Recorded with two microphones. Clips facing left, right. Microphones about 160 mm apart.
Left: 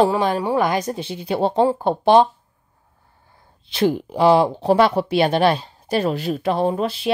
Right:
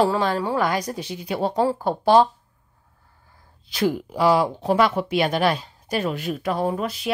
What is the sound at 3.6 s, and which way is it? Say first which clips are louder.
Speech: left 3 dB; 25° left (ahead or behind).